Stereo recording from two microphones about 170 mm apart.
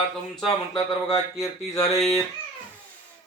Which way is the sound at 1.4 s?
20° left (ahead or behind).